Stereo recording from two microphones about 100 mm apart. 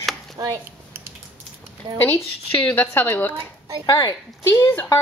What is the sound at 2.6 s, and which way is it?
Speech, 20° left (ahead or behind).